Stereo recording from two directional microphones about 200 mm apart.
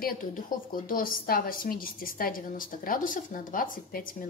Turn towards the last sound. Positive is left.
turn(degrees=45)  # may be behind; listen again after turning